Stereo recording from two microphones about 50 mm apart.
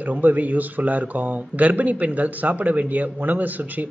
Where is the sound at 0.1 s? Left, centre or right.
Right.